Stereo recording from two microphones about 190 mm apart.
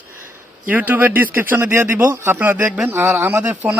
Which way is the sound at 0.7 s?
10° right (ahead or behind).